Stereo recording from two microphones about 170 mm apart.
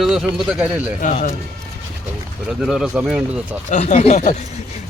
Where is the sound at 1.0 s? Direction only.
50° left (ahead or behind).